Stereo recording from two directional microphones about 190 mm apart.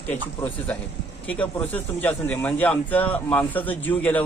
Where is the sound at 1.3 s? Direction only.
5° left (ahead or behind).